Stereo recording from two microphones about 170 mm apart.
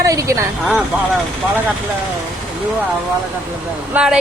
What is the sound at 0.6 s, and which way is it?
Speech, centre (ahead or behind).